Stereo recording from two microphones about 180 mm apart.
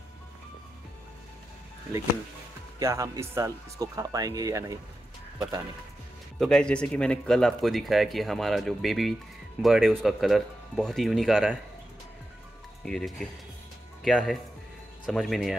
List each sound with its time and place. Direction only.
2.8 s speech: 15° right (ahead or behind)
6.4 s speech: 5° left (ahead or behind)
12.8 s speech: centre (ahead or behind)